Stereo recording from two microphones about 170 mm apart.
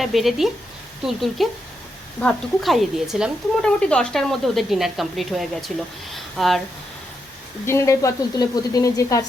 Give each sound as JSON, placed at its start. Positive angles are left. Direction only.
{"t": 0.0, "sound": "speech", "side_deg": 0}
{"t": 7.6, "sound": "a woman's voice", "side_deg": 15}